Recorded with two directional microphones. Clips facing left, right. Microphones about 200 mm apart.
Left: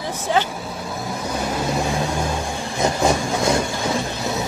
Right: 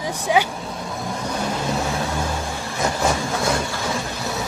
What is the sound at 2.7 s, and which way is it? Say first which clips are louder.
Train: left 3 dB; 15° left (ahead or behind).